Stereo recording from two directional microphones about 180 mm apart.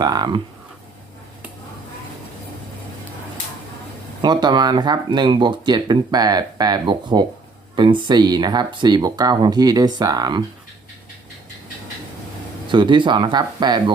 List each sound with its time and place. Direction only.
0.0 s speech: 20° right (ahead or behind)
4.2 s speech: 25° right (ahead or behind)
12.6 s speech: 25° right (ahead or behind)